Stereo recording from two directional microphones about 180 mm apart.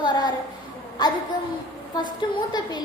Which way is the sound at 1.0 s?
25° left (ahead or behind).